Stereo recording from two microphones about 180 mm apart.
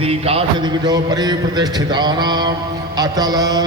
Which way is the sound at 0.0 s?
35° right (ahead or behind).